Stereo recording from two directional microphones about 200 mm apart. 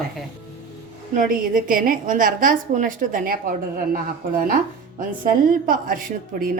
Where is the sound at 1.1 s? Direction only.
40° right (ahead or behind).